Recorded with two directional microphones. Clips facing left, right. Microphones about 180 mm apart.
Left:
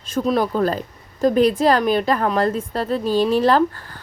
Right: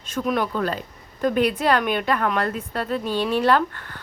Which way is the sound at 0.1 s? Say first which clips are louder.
Left 4 dB; 30° left (ahead or behind).